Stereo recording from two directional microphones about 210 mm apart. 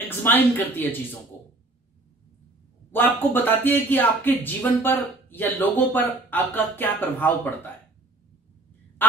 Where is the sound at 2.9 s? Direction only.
10° left (ahead or behind).